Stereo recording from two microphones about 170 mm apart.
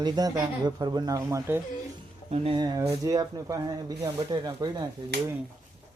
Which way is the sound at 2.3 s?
30° right (ahead or behind).